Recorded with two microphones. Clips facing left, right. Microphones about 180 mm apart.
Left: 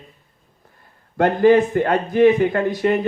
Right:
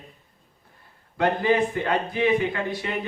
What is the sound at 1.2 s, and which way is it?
Speech, 45° left (ahead or behind).